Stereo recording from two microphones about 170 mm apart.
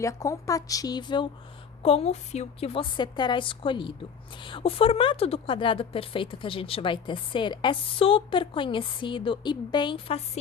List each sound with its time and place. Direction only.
0.0 s a woman's voice: 20° left (ahead or behind)